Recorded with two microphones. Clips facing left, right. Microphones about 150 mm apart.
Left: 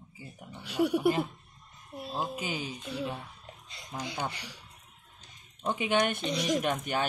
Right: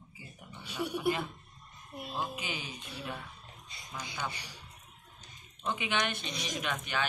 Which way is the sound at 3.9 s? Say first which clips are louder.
Left 6 dB; 45° left (ahead or behind).